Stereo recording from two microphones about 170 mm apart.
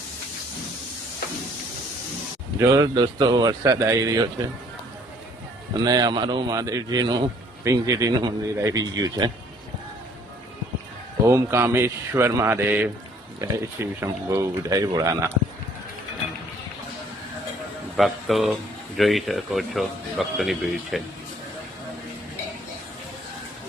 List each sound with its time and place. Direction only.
2.6 s a man's voice: 20° right (ahead or behind)
5.7 s a man's voice: 25° right (ahead or behind)
11.3 s speech: 15° right (ahead or behind)
17.9 s a man's voice: centre (ahead or behind)